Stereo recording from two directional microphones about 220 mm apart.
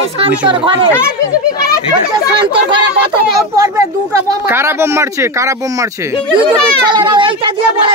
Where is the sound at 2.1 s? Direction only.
20° right (ahead or behind).